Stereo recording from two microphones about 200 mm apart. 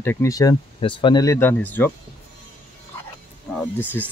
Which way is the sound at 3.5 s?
5° left (ahead or behind).